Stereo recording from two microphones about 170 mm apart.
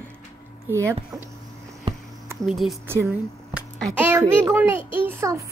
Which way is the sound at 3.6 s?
Centre (ahead or behind).